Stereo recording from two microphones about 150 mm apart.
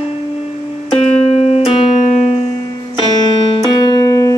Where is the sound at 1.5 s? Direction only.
40° left (ahead or behind).